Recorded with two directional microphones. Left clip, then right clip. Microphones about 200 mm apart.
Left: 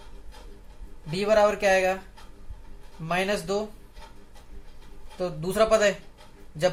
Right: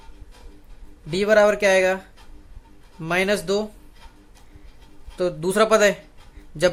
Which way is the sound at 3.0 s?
50° right (ahead or behind).